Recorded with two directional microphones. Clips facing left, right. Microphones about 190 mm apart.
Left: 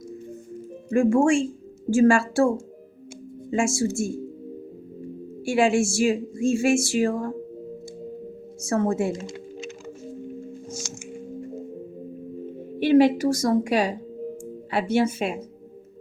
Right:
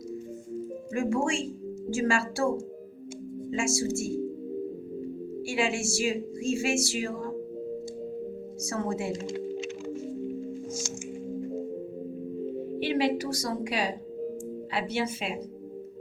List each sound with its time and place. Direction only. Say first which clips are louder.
0.9 s speech: left 9 dB; 50° left (ahead or behind)
3.5 s speech: left 5 dB; 50° left (ahead or behind)
5.5 s speech: left 9 dB; 50° left (ahead or behind)
8.6 s speech: left 8 dB; 50° left (ahead or behind)
10.7 s music: right 1 dB; 65° left (ahead or behind)
12.8 s speech: left 10 dB; 50° left (ahead or behind)